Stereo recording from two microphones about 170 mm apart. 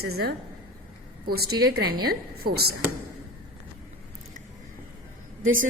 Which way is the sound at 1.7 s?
65° right (ahead or behind).